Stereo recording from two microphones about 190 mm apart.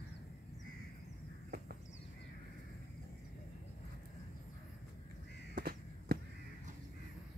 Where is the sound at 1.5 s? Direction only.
60° right (ahead or behind).